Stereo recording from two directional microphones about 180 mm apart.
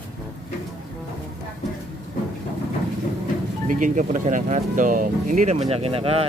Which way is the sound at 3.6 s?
45° right (ahead or behind).